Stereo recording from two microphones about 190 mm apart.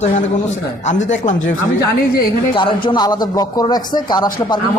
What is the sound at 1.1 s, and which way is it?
Speech, 40° left (ahead or behind).